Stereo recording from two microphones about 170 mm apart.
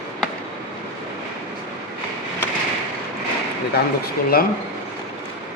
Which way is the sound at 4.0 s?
60° left (ahead or behind).